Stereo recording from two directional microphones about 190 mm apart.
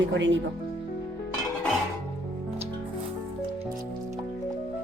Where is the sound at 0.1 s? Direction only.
75° right (ahead or behind).